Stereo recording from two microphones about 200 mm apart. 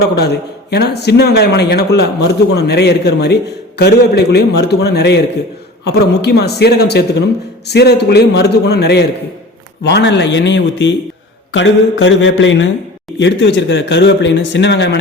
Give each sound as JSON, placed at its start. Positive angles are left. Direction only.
{"t": 0.2, "sound": "speech", "side_deg": 55}